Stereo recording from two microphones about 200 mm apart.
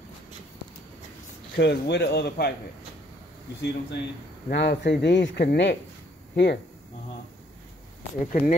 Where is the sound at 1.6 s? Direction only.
55° left (ahead or behind).